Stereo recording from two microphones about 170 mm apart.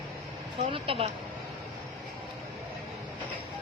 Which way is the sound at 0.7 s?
35° right (ahead or behind).